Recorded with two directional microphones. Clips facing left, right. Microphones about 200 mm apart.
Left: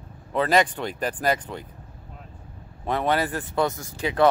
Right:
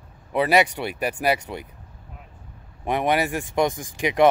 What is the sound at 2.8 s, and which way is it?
Speech, 15° right (ahead or behind).